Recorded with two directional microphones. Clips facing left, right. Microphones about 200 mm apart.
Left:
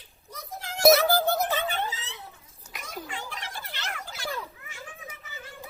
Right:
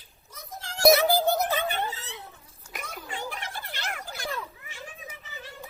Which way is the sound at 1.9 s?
60° right (ahead or behind).